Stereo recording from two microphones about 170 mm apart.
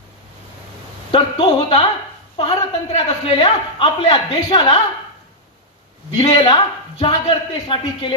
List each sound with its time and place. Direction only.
1.1 s a man's voice: 30° left (ahead or behind)
6.2 s a man's voice: 35° left (ahead or behind)